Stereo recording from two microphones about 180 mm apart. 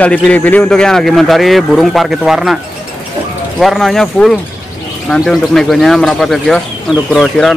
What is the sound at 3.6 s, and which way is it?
A man's voice, centre (ahead or behind).